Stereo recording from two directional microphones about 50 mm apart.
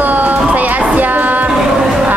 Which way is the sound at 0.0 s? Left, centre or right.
Right.